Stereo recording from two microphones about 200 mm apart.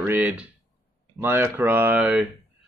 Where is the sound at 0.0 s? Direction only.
10° right (ahead or behind).